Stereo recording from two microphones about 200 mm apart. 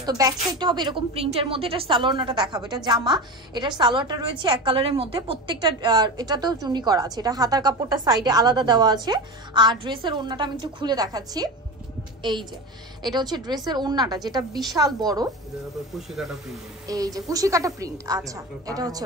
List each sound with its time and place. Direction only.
0.0 s a woman's voice: 20° right (ahead or behind)
15.9 s speech: centre (ahead or behind)
16.8 s a woman's voice: 15° right (ahead or behind)